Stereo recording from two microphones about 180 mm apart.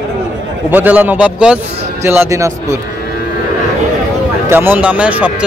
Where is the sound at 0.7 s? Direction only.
10° right (ahead or behind).